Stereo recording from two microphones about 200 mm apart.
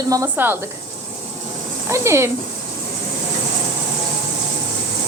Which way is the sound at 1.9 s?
15° right (ahead or behind).